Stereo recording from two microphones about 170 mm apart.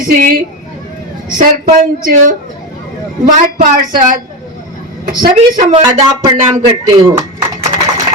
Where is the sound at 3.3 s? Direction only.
55° right (ahead or behind).